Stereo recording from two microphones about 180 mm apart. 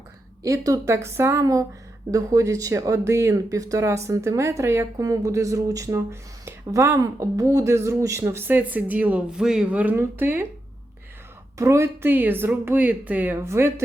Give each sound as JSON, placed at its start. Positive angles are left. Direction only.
{"t": 0.4, "sound": "speech", "side_deg": -20}
{"t": 11.5, "sound": "speech", "side_deg": -15}